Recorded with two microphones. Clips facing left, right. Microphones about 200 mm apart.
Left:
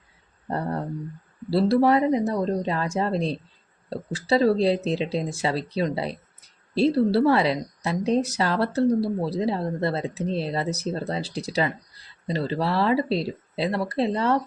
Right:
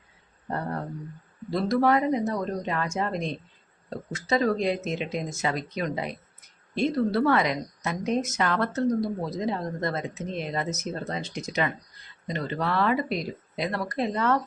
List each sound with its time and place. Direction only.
1.5 s a woman's voice: 30° left (ahead or behind)